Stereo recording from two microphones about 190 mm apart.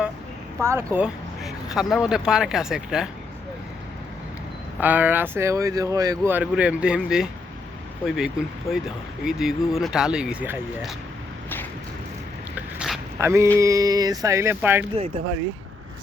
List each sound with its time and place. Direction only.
0.6 s speech: 15° right (ahead or behind)
0.9 s speech: 5° right (ahead or behind)
4.8 s speech: 10° right (ahead or behind)
12.5 s dog: 5° right (ahead or behind)
13.1 s a sound: 15° right (ahead or behind)
13.6 s speech: 15° right (ahead or behind)